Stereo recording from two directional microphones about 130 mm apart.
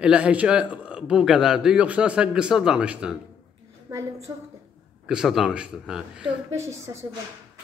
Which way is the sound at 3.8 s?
25° right (ahead or behind).